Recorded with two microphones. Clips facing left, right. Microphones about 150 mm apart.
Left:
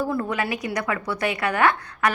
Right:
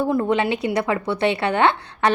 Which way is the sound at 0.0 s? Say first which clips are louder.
Right 5 dB; 25° right (ahead or behind).